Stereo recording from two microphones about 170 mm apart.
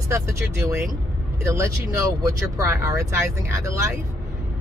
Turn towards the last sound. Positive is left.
turn(degrees=-15)  # may be behind; listen again after turning